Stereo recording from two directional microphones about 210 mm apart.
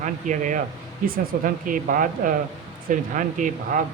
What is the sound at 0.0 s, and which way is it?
Speech, 35° right (ahead or behind).